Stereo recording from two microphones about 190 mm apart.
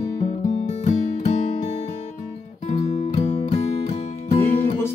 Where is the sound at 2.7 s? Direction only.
35° left (ahead or behind).